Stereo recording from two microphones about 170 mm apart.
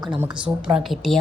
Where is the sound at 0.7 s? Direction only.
Centre (ahead or behind).